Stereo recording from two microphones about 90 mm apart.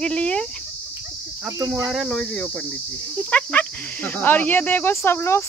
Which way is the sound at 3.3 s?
20° left (ahead or behind).